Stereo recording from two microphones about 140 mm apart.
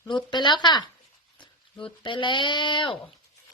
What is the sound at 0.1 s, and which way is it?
Speech, 35° left (ahead or behind).